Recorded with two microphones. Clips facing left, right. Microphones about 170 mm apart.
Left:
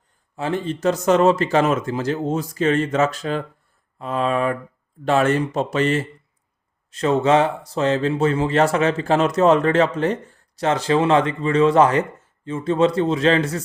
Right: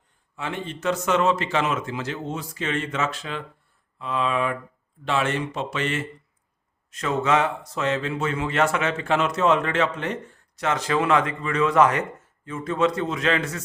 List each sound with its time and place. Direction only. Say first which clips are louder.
0.3 s speech: left 7 dB; 35° left (ahead or behind)